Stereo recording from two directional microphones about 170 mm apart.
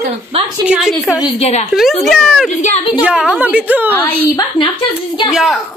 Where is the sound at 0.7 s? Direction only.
5° right (ahead or behind).